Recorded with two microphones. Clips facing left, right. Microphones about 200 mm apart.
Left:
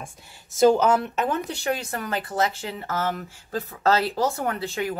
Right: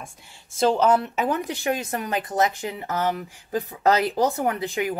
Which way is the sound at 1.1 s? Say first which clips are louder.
Right 1 dB; 15° right (ahead or behind).